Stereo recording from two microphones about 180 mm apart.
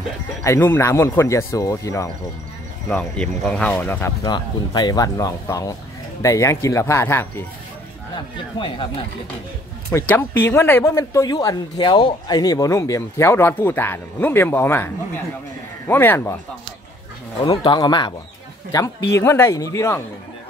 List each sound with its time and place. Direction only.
0.4 s speech: 15° left (ahead or behind)
2.9 s speech: 5° left (ahead or behind)
4.2 s speech: 25° left (ahead or behind)
8.5 s speech: 30° left (ahead or behind)
9.8 s speech: 15° left (ahead or behind)
15.9 s speech: 10° left (ahead or behind)
17.4 s speech: 25° left (ahead or behind)